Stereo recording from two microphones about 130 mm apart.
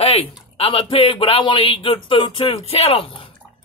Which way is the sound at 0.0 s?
50° left (ahead or behind).